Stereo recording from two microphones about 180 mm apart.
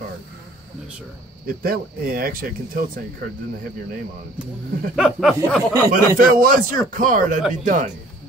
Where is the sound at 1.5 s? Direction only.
55° right (ahead or behind).